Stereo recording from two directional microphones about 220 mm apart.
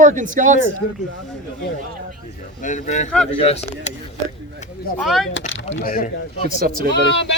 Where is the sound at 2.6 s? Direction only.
35° left (ahead or behind).